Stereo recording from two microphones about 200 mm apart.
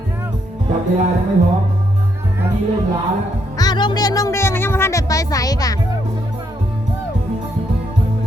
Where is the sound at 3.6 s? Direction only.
20° left (ahead or behind).